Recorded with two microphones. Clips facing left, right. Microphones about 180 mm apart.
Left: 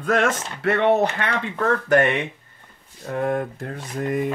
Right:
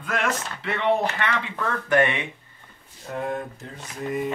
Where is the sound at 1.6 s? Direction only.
40° left (ahead or behind).